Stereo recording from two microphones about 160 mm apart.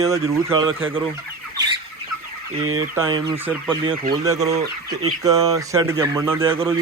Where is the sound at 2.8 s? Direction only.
20° right (ahead or behind).